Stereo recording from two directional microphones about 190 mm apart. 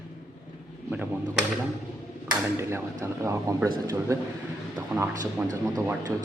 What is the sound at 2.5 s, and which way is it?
A man's voice, 15° right (ahead or behind).